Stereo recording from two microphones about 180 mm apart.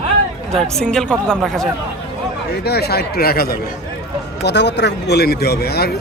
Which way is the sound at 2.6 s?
65° left (ahead or behind).